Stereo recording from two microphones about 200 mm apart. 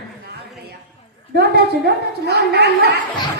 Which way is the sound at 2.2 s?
55° right (ahead or behind).